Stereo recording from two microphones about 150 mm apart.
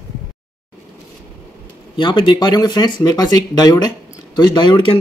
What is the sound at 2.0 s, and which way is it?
Speech, 30° left (ahead or behind).